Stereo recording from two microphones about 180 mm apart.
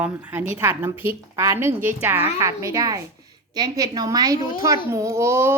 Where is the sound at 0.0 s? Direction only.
10° right (ahead or behind).